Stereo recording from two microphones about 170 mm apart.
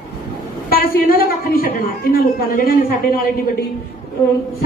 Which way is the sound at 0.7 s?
60° left (ahead or behind).